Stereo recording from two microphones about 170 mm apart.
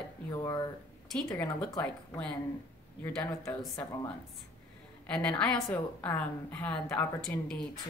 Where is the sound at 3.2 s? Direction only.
15° left (ahead or behind).